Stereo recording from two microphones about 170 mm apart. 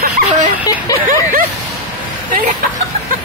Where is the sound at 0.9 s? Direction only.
20° left (ahead or behind).